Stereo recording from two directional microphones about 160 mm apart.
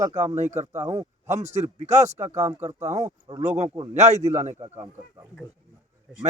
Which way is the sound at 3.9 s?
45° right (ahead or behind).